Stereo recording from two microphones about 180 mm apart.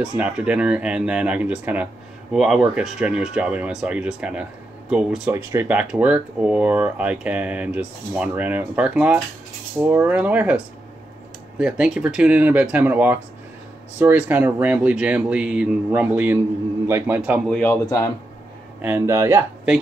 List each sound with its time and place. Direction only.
0.0 s speech: 5° right (ahead or behind)
17.6 s speech: 15° left (ahead or behind)
18.8 s speech: 10° right (ahead or behind)